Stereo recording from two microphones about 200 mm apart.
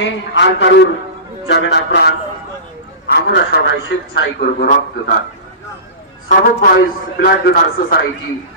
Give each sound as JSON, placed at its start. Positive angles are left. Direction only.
{"t": 0.0, "sound": "a man's voice", "side_deg": 65}
{"t": 6.2, "sound": "a man's voice", "side_deg": 45}